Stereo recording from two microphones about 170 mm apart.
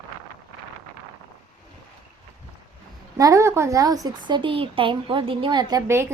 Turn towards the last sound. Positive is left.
turn(degrees=-15)  # may be behind; listen again after turning